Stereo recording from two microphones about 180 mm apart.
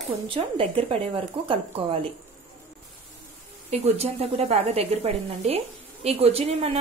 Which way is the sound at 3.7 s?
35° right (ahead or behind).